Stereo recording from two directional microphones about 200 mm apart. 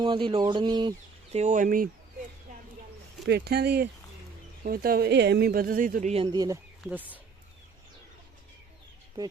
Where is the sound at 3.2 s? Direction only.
55° right (ahead or behind); by 6.5 s 20° right (ahead or behind).